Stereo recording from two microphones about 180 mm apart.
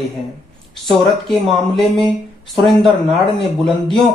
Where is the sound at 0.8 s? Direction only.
Centre (ahead or behind).